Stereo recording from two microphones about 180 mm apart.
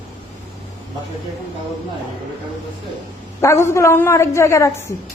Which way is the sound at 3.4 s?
15° left (ahead or behind).